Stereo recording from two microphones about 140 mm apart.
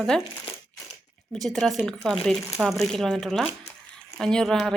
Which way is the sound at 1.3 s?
Centre (ahead or behind).